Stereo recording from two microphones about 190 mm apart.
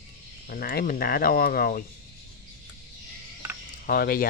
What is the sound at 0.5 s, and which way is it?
Speech, 55° left (ahead or behind).